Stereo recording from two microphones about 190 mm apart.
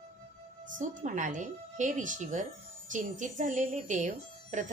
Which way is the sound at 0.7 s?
40° right (ahead or behind).